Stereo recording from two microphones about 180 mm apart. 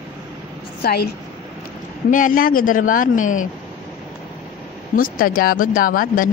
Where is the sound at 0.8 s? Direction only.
60° left (ahead or behind).